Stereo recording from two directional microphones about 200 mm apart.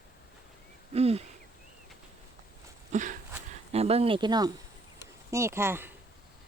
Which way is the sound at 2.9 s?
40° right (ahead or behind).